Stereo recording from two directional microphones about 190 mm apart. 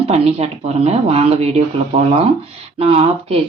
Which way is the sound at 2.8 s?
30° right (ahead or behind).